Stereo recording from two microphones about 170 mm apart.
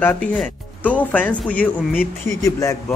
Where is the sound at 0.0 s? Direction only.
10° left (ahead or behind).